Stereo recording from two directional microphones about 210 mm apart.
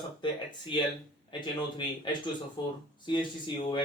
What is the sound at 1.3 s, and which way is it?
Speech, 20° left (ahead or behind).